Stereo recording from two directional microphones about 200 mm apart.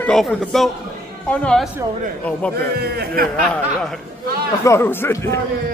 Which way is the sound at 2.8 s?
50° right (ahead or behind).